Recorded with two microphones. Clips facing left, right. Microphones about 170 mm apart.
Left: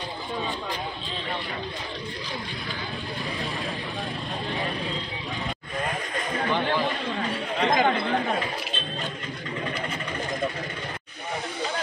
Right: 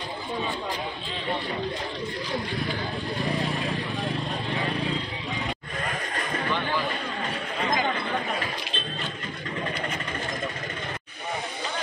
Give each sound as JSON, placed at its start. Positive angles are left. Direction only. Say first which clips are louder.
{"t": 7.6, "sound": "chatter", "louder": "left 5 dB", "side_deg": 70}